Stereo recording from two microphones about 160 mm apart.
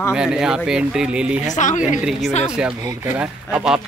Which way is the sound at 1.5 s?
50° left (ahead or behind).